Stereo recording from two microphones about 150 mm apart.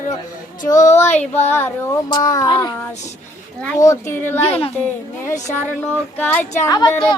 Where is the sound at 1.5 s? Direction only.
15° left (ahead or behind).